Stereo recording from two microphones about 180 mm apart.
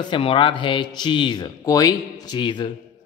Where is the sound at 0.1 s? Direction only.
30° left (ahead or behind).